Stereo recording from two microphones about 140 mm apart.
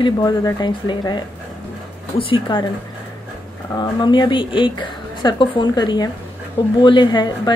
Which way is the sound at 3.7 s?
30° left (ahead or behind).